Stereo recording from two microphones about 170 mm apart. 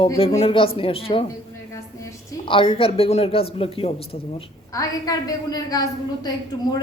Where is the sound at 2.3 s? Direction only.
30° left (ahead or behind).